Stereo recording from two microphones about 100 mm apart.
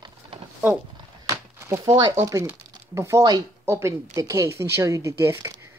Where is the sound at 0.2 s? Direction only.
65° right (ahead or behind).